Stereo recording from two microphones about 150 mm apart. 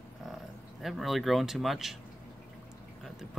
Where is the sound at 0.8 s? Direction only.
Centre (ahead or behind).